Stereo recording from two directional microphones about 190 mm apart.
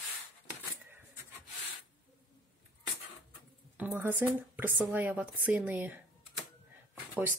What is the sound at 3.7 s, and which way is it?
Speech, 10° right (ahead or behind).